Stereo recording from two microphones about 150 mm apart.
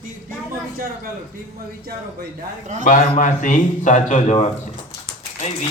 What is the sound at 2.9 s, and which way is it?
Speech, 60° left (ahead or behind).